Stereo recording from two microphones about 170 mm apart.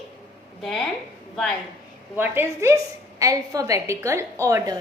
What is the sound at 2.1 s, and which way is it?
A woman's voice, 10° right (ahead or behind).